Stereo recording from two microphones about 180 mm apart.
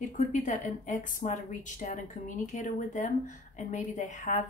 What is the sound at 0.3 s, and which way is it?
A woman's voice, 45° left (ahead or behind).